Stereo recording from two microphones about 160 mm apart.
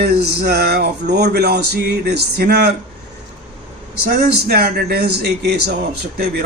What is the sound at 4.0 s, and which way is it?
A man's voice, 85° right.